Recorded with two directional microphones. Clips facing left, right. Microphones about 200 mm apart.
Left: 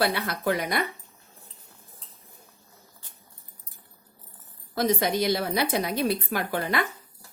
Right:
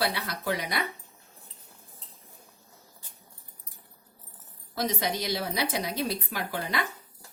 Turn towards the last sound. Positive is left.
turn(degrees=55)  # may be behind; listen again after turning